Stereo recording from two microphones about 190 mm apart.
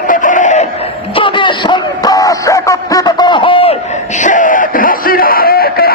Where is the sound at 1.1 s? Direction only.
25° left (ahead or behind).